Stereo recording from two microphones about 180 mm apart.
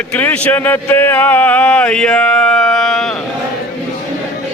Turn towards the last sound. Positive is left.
turn(degrees=5)  # may be behind; listen again after turning